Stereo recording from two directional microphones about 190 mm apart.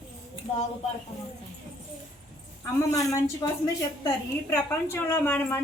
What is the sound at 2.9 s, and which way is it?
A woman's voice, 15° left (ahead or behind).